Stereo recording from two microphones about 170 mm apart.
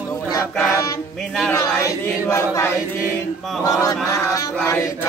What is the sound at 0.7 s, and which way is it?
Child singing, 20° left (ahead or behind).